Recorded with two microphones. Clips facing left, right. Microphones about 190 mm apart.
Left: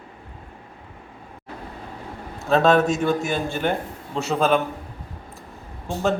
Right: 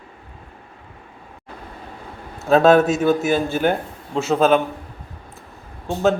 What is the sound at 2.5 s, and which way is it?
A man's voice, 5° right (ahead or behind).